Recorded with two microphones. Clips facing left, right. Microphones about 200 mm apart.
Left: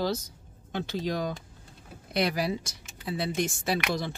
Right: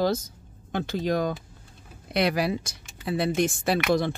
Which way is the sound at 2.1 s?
65° right (ahead or behind).